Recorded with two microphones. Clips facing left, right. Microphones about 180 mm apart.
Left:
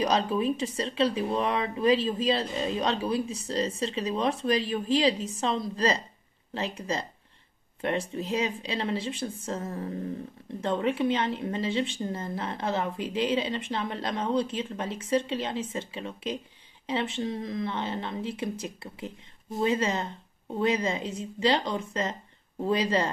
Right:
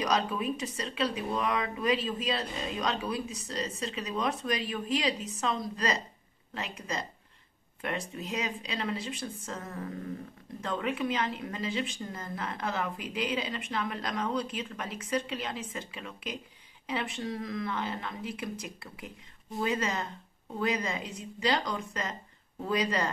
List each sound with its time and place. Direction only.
0.0 s speech: 30° left (ahead or behind)